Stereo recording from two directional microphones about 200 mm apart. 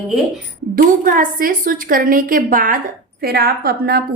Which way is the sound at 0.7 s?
45° right (ahead or behind).